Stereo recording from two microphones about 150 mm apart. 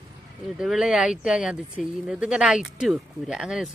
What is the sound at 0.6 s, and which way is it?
Speech, 5° right (ahead or behind).